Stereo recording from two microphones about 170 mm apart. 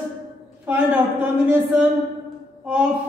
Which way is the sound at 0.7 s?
10° right (ahead or behind).